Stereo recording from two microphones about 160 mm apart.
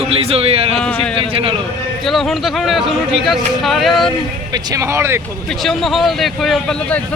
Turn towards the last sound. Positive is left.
turn(degrees=5)  # may be behind; listen again after turning